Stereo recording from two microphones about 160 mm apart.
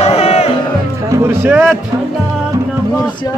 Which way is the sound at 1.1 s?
20° right (ahead or behind).